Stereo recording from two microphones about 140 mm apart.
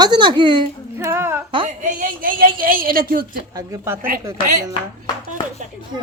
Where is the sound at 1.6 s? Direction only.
70° right (ahead or behind); by 3.3 s 90° right.